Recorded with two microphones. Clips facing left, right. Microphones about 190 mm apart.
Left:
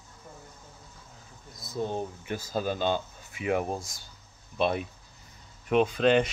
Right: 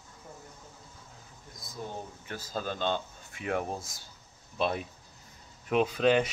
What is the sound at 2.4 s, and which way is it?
Speech, 10° left (ahead or behind).